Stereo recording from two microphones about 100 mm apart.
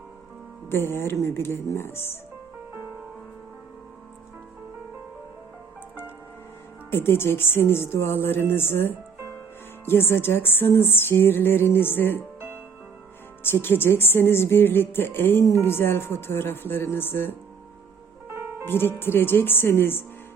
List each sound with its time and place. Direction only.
0.7 s speech: 25° left (ahead or behind)
6.9 s speech: 25° left (ahead or behind)
13.4 s speech: 20° left (ahead or behind)
18.3 s music: 20° right (ahead or behind)
18.6 s speech: 25° left (ahead or behind)